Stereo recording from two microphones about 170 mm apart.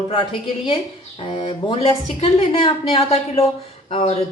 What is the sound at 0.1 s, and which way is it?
A woman's voice, 30° left (ahead or behind).